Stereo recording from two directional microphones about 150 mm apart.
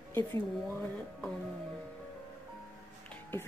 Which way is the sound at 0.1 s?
15° left (ahead or behind).